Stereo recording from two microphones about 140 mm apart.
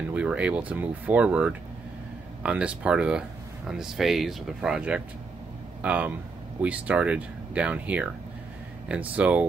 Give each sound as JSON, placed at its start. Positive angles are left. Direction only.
{"t": 0.1, "sound": "speech", "side_deg": -10}